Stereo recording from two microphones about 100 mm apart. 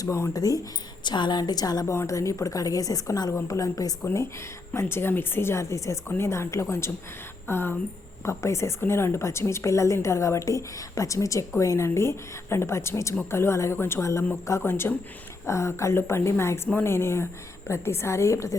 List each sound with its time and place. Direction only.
0.0 s a woman's voice: 30° left (ahead or behind)
1.0 s a woman's voice: 50° left (ahead or behind); by 18.5 s 30° left (ahead or behind)